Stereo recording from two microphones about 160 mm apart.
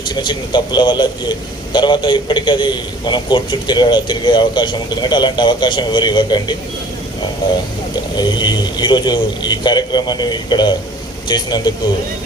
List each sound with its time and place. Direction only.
0.1 s a man's voice: 30° left (ahead or behind)
8.1 s a man's voice: 25° left (ahead or behind)